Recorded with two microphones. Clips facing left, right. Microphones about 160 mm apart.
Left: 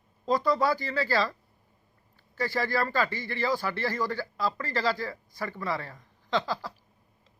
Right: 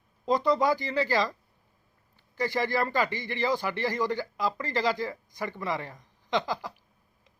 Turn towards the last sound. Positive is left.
turn(degrees=-15)  # may be behind; listen again after turning